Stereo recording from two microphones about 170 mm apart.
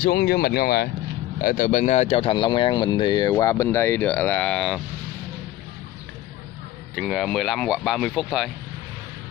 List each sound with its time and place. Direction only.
0.0 s speech: 65° left (ahead or behind)
1.4 s speech: 50° left (ahead or behind); by 4.8 s 5° left (ahead or behind)
7.0 s speech: centre (ahead or behind)